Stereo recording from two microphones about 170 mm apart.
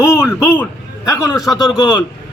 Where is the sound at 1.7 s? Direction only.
25° left (ahead or behind).